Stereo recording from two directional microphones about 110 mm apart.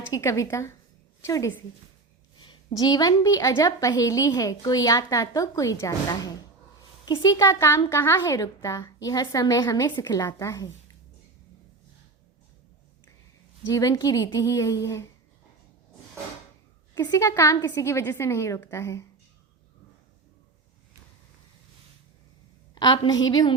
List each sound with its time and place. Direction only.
0.1 s a woman's voice: 30° left (ahead or behind)
2.4 s a woman's voice: 40° left (ahead or behind)
7.3 s a woman's voice: 30° left (ahead or behind)
13.7 s a woman's voice: 30° left (ahead or behind)
16.9 s a woman's voice: 35° left (ahead or behind)
22.7 s a woman's voice: 40° left (ahead or behind)